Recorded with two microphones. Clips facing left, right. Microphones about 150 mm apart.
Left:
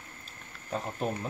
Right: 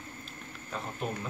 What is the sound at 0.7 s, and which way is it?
Speech, 35° left (ahead or behind).